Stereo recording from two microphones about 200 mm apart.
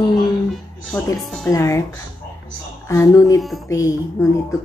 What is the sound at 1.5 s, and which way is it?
Speech, 15° left (ahead or behind).